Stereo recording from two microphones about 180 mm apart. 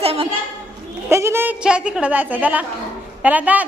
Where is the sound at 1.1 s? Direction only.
15° right (ahead or behind).